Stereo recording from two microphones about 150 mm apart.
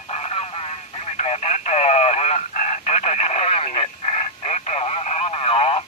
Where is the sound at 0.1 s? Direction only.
45° left (ahead or behind).